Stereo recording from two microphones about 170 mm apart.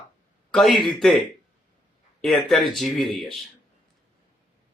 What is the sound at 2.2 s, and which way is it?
Speech, centre (ahead or behind).